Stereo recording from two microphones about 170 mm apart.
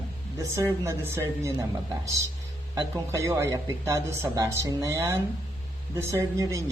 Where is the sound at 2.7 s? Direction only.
15° right (ahead or behind).